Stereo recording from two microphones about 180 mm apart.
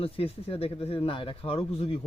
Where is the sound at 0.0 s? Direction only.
30° left (ahead or behind).